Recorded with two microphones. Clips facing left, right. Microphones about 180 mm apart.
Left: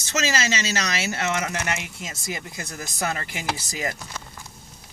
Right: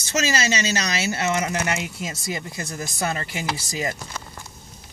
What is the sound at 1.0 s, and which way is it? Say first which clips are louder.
Speech: right 3 dB; 30° right (ahead or behind).